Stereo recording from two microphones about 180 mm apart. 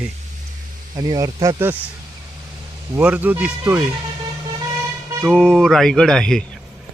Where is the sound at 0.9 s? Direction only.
20° right (ahead or behind).